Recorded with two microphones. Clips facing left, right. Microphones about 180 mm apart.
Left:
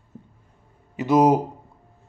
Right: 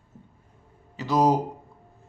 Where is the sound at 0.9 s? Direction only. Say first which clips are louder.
Left 6 dB; 20° left (ahead or behind).